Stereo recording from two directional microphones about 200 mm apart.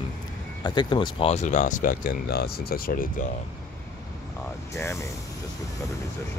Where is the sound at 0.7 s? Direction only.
20° left (ahead or behind); by 3.3 s 45° left (ahead or behind).